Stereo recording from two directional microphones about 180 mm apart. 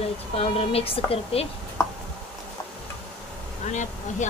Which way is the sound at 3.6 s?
40° left (ahead or behind).